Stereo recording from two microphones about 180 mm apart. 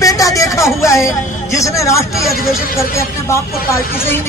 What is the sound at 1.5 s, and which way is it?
Speech, 15° left (ahead or behind).